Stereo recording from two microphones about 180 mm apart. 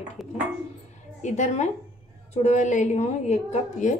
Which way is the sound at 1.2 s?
40° left (ahead or behind).